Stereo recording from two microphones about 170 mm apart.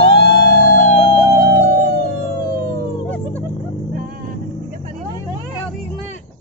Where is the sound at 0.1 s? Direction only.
60° left (ahead or behind).